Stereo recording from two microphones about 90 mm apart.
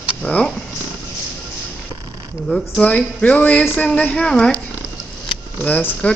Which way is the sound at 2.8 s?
15° left (ahead or behind).